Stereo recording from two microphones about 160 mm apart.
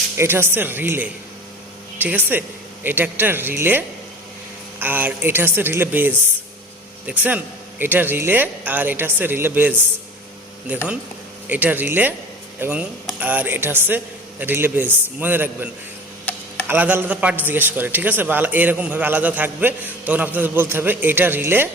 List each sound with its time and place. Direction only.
0.2 s a man's voice: 15° right (ahead or behind)